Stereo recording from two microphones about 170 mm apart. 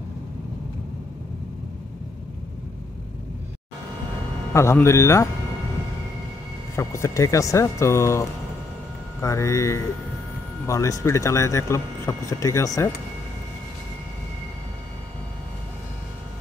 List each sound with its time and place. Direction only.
4.6 s speech: 15° left (ahead or behind)
6.7 s speech: 15° left (ahead or behind)